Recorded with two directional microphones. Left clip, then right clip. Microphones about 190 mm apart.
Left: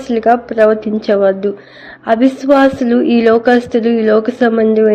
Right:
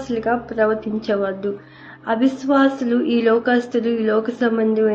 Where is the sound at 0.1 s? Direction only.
45° left (ahead or behind).